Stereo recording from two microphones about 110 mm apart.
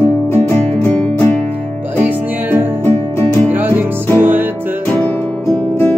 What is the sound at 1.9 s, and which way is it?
Music, 15° right (ahead or behind).